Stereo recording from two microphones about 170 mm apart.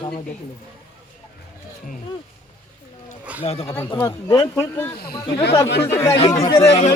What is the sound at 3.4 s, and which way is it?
Speech, 35° left (ahead or behind).